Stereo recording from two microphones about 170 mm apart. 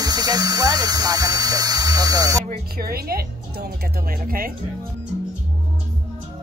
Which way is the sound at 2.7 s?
65° right (ahead or behind).